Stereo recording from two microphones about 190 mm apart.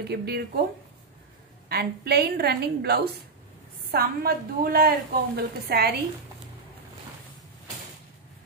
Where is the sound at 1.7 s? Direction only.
55° right (ahead or behind).